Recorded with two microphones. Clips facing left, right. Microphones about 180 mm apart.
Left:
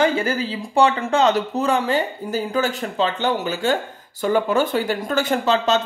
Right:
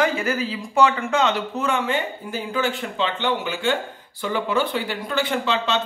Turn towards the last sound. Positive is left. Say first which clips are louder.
# left 4 dB
turn(degrees=45)  # may be behind; listen again after turning